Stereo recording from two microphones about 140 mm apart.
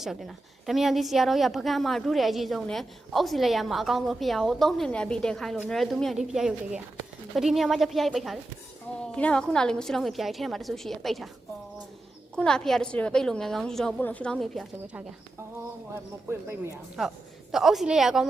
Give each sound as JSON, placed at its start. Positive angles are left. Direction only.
{"t": 0.0, "sound": "a woman's voice", "side_deg": 0}
{"t": 12.4, "sound": "a woman's voice", "side_deg": 5}
{"t": 17.0, "sound": "a woman's voice", "side_deg": 0}